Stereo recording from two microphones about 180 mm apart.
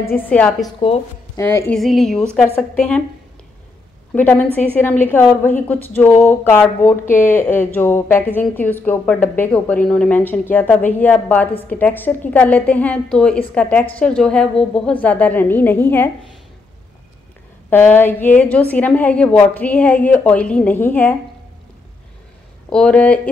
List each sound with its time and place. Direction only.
0.0 s a woman's voice: 10° left (ahead or behind)
1.3 s speech: 15° left (ahead or behind)
1.7 s speech: centre (ahead or behind)
4.1 s a woman's voice: 10° left (ahead or behind)
17.6 s a woman's voice: 10° left (ahead or behind)
22.7 s a woman's voice: 5° left (ahead or behind)